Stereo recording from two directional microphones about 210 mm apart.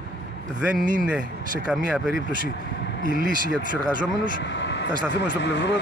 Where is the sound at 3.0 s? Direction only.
45° left (ahead or behind).